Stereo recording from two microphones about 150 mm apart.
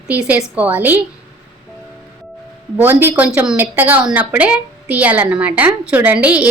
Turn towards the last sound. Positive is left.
turn(degrees=-10)  # may be behind; listen again after turning